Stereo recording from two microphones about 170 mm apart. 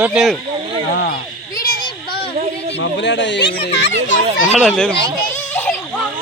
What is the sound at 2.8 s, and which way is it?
A child's voice, 90° left.